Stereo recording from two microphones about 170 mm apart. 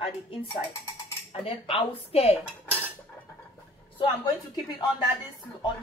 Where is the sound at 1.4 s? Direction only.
35° left (ahead or behind).